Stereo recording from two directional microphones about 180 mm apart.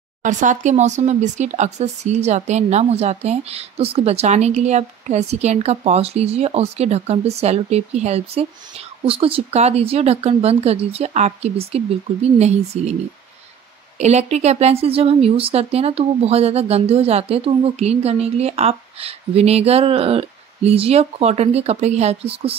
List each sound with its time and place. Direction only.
0.2 s speech: 45° right (ahead or behind)
13.9 s speech: 40° right (ahead or behind)